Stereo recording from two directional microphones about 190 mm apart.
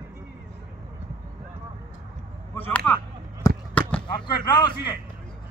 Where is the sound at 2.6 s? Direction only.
10° left (ahead or behind).